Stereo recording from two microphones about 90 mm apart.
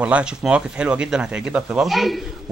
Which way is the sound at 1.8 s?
Centre (ahead or behind).